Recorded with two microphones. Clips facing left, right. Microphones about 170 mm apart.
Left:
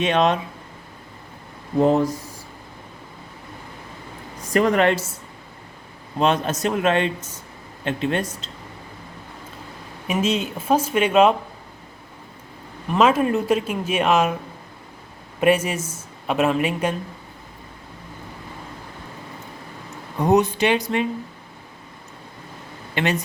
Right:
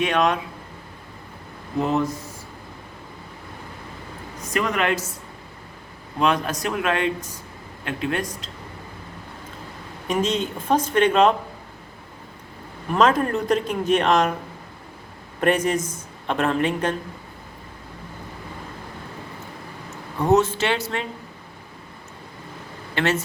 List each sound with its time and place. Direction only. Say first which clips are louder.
0.0 s a man's voice: left 2 dB; 25° left (ahead or behind)
1.8 s a woman's voice: left 5 dB; 35° left (ahead or behind)
4.5 s a woman's voice: left 5 dB; 35° left (ahead or behind)
6.1 s a man's voice: left 2 dB; 25° left (ahead or behind)
10.1 s speech: left 1 dB; 5° left (ahead or behind)
13.0 s speech: left 2 dB; 5° left (ahead or behind)
15.4 s speech: left 1 dB; 5° left (ahead or behind)
20.1 s speech: left 1 dB; 15° left (ahead or behind)
23.0 s speech: even; 15° left (ahead or behind)